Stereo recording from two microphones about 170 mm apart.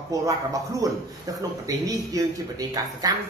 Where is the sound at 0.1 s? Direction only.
20° right (ahead or behind).